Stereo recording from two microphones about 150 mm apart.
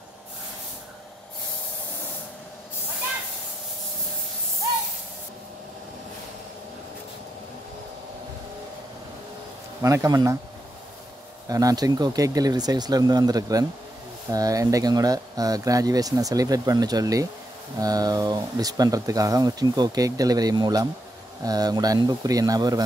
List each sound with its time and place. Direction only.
9.8 s speech: 20° right (ahead or behind)
11.4 s speech: 25° right (ahead or behind)